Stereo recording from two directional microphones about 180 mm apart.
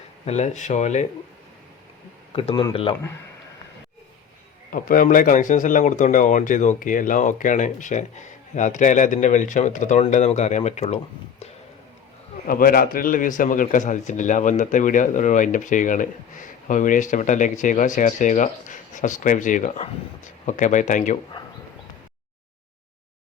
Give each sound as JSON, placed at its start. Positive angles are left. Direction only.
{"t": 0.3, "sound": "speech", "side_deg": 40}
{"t": 2.3, "sound": "speech", "side_deg": 30}
{"t": 4.7, "sound": "speech", "side_deg": 50}
{"t": 12.5, "sound": "speech", "side_deg": 55}